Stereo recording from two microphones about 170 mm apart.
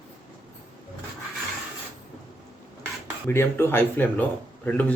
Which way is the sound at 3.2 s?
15° left (ahead or behind).